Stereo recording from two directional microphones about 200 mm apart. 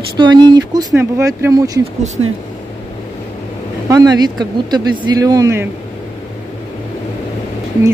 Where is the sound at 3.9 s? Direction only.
20° right (ahead or behind).